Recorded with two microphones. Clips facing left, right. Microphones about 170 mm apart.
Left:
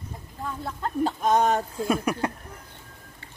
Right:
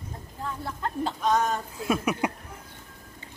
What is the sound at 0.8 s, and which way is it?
Speech, 45° left (ahead or behind).